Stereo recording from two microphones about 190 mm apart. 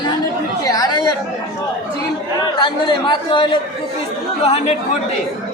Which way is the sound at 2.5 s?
25° left (ahead or behind).